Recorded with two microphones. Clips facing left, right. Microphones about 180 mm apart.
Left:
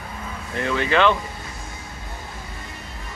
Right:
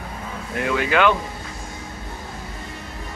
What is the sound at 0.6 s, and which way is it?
Speech, 5° right (ahead or behind).